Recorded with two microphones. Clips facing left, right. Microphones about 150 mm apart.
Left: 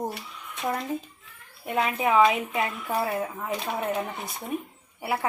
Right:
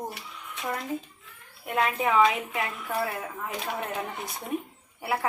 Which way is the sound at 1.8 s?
15° left (ahead or behind).